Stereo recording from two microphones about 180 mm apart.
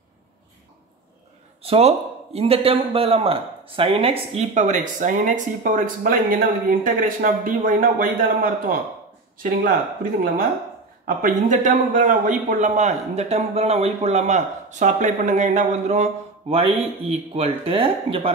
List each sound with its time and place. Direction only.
1.6 s speech: 35° right (ahead or behind); by 8.7 s 50° right (ahead or behind)
11.1 s a man's voice: 45° right (ahead or behind); by 18.3 s 30° right (ahead or behind)